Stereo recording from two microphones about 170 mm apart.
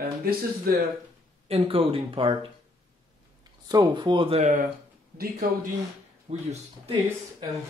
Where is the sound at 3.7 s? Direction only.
25° right (ahead or behind); by 4.6 s 40° right (ahead or behind).